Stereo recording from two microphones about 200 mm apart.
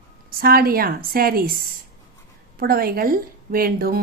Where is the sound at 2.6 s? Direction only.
50° right (ahead or behind).